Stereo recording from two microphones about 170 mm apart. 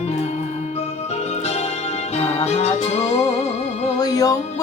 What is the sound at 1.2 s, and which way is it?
Music, 40° left (ahead or behind).